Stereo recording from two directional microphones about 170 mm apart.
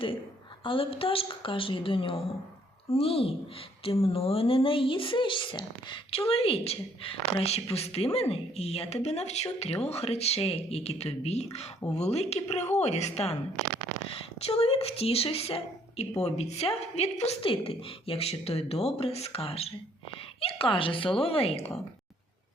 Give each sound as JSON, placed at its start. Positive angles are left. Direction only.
{"t": 0.6, "sound": "speech", "side_deg": 30}
{"t": 14.4, "sound": "speech", "side_deg": 35}